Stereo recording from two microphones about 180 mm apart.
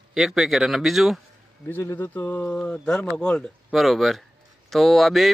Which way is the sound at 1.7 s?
10° left (ahead or behind).